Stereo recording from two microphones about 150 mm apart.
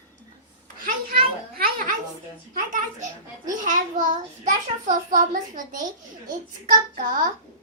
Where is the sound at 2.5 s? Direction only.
65° right (ahead or behind).